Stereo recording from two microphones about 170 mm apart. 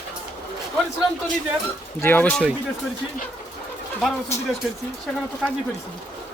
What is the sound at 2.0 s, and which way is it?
Speech, 10° left (ahead or behind).